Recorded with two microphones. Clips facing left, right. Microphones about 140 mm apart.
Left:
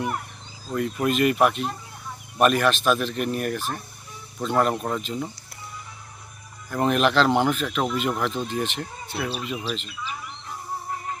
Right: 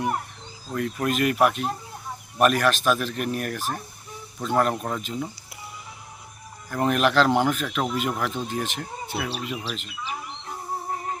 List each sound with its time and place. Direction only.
0.7 s a man's voice: 5° left (ahead or behind)
6.8 s speech: 5° right (ahead or behind)
10.0 s bird: 30° right (ahead or behind)